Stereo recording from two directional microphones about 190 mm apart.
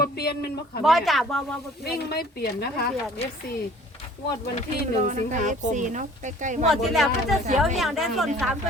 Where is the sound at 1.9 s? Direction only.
60° left (ahead or behind).